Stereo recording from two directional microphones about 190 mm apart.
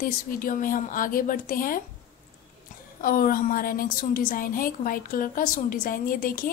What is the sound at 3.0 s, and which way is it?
Speech, 50° left (ahead or behind).